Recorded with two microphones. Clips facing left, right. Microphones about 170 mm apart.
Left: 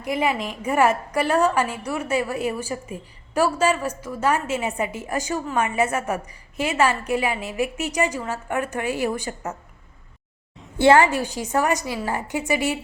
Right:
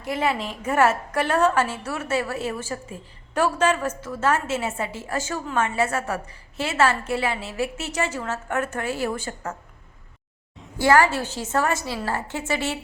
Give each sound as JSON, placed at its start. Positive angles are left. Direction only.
{"t": 0.0, "sound": "a woman's voice", "side_deg": 10}
{"t": 10.8, "sound": "a woman's voice", "side_deg": 25}